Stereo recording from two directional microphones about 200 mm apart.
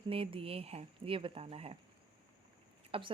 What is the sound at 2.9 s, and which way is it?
Speech, 25° right (ahead or behind).